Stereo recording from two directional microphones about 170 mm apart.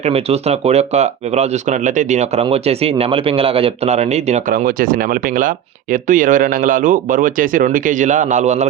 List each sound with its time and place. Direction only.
0.0 s speech: 40° right (ahead or behind)
4.5 s speech: 55° right (ahead or behind)